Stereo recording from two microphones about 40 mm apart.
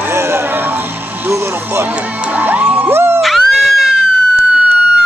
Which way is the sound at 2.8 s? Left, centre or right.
Right.